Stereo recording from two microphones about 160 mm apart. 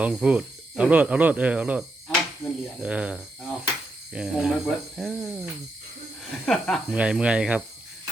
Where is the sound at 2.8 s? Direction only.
5° right (ahead or behind).